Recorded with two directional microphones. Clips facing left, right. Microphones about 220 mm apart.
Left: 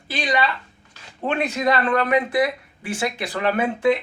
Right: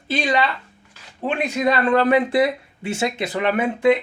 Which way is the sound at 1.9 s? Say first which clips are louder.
Right 3 dB; 30° right (ahead or behind).